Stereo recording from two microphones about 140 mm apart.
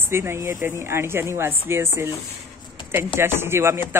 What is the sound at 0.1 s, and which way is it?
Speech, 20° right (ahead or behind).